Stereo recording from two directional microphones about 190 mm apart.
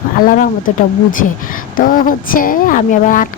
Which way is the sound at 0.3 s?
45° left (ahead or behind).